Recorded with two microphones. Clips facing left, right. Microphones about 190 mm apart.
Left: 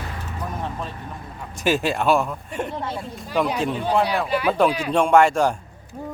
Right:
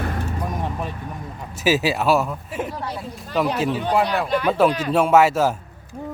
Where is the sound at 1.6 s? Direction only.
5° right (ahead or behind).